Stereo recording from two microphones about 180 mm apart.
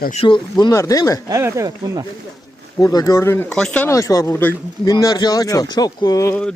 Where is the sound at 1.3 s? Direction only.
15° right (ahead or behind).